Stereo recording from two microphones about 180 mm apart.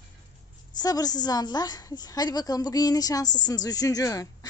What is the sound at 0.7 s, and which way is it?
A woman's voice, 20° left (ahead or behind).